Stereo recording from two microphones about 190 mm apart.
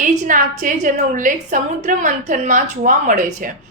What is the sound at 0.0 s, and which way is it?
A woman's voice, 45° right (ahead or behind).